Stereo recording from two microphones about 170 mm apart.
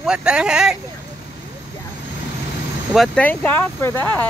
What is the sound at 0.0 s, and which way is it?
Speech, 5° right (ahead or behind).